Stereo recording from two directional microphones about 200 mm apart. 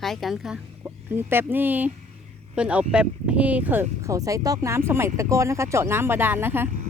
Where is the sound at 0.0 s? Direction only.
Centre (ahead or behind).